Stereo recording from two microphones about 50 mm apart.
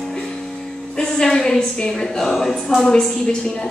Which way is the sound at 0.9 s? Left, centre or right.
Centre.